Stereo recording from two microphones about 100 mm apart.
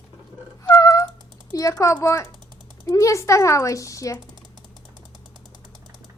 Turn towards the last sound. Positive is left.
turn(degrees=35)  # may be behind; listen again after turning